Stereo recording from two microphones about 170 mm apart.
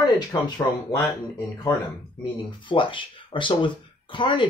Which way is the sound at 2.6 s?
30° left (ahead or behind).